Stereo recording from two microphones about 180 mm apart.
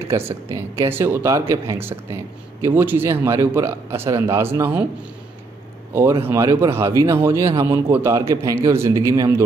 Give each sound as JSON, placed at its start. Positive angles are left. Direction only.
{"t": 0.1, "sound": "speech", "side_deg": -15}
{"t": 6.2, "sound": "speech", "side_deg": -15}